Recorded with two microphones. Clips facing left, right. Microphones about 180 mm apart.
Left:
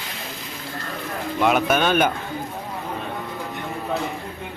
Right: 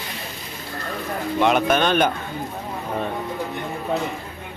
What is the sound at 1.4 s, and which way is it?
Speech, 5° left (ahead or behind).